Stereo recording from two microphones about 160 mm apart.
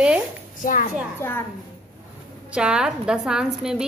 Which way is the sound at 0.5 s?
60° left (ahead or behind).